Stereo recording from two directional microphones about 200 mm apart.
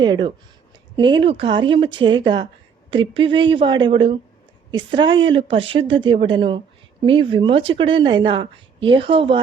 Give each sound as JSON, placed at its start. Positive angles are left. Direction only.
{"t": 0.0, "sound": "speech", "side_deg": -25}